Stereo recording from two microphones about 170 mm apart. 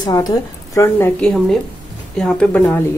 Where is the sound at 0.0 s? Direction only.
20° left (ahead or behind).